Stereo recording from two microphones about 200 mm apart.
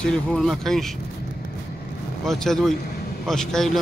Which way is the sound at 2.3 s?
Centre (ahead or behind).